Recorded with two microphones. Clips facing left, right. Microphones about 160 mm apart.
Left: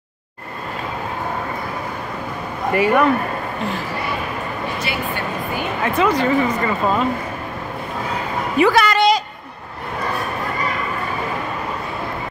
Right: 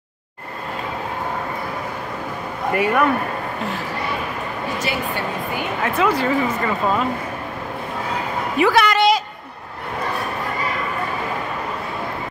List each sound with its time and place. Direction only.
2.7 s speech: centre (ahead or behind)
5.8 s speech: 5° right (ahead or behind)
8.5 s a sound: centre (ahead or behind)